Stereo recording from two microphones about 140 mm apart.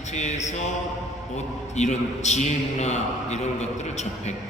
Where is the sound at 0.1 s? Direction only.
55° left (ahead or behind).